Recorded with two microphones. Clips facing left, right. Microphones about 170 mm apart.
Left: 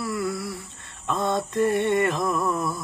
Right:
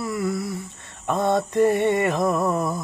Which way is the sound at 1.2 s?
15° right (ahead or behind).